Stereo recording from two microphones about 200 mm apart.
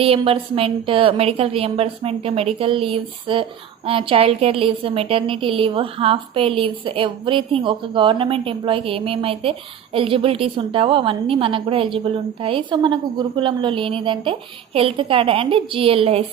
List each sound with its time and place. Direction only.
0.0 s a woman's voice: 30° right (ahead or behind)